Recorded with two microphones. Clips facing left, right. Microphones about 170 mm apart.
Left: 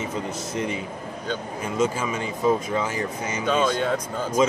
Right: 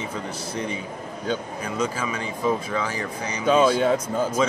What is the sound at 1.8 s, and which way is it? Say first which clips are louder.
Speech: left 3 dB; 25° left (ahead or behind).